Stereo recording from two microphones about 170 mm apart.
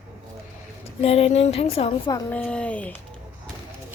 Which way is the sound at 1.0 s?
35° left (ahead or behind).